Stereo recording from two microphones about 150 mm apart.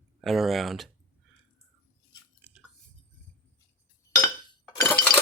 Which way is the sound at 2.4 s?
10° right (ahead or behind).